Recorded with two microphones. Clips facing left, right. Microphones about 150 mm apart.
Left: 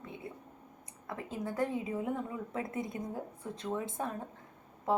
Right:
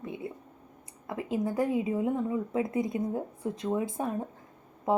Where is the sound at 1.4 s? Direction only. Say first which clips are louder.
Right 4 dB; 20° right (ahead or behind).